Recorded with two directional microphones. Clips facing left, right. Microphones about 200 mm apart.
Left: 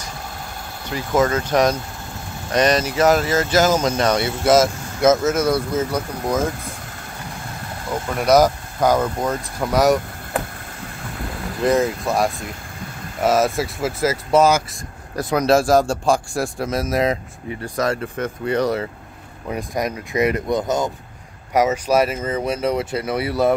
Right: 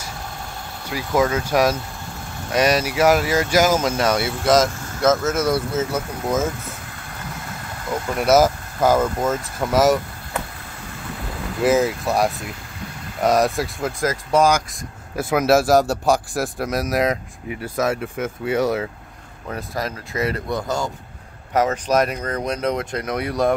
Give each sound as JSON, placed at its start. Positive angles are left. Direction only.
{"t": 0.8, "sound": "speech", "side_deg": -10}
{"t": 5.0, "sound": "speech", "side_deg": 15}
{"t": 5.8, "sound": "speech", "side_deg": -5}
{"t": 8.2, "sound": "a man's voice", "side_deg": -5}
{"t": 11.6, "sound": "a man's voice", "side_deg": 0}
{"t": 15.1, "sound": "a man's voice", "side_deg": -5}
{"t": 19.4, "sound": "speech", "side_deg": 15}
{"t": 21.5, "sound": "a man's voice", "side_deg": 10}